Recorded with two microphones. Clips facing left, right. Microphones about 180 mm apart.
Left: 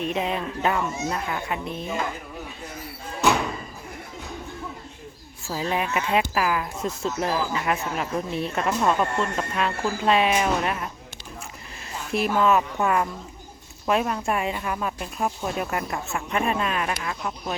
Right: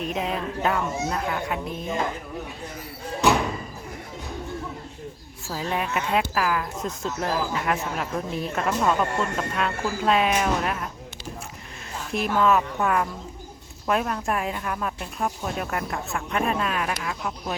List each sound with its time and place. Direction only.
0.0 s speech: centre (ahead or behind)
5.5 s speech: 5° left (ahead or behind)
12.1 s speech: centre (ahead or behind)